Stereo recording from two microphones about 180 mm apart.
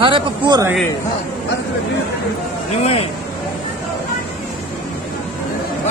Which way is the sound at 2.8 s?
35° left (ahead or behind).